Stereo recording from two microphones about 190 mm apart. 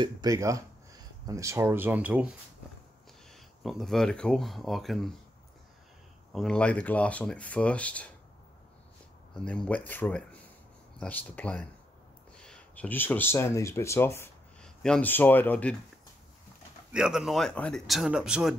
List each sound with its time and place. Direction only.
0.0 s speech: 20° right (ahead or behind); by 5.1 s centre (ahead or behind)
6.3 s speech: 5° left (ahead or behind)
9.3 s speech: 5° left (ahead or behind)
16.9 s speech: 5° right (ahead or behind)